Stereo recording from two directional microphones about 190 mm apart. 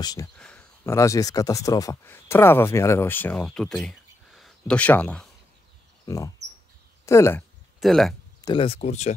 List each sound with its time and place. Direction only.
0.0 s speech: 20° left (ahead or behind)
0.4 s speech: 5° left (ahead or behind)
6.0 s speech: 15° left (ahead or behind)
7.8 s speech: centre (ahead or behind)
8.4 s speech: 25° left (ahead or behind)